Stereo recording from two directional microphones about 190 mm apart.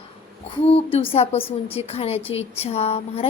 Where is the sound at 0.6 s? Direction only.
30° left (ahead or behind).